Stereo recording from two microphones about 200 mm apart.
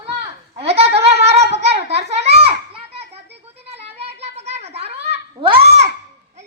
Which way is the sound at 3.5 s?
30° right (ahead or behind).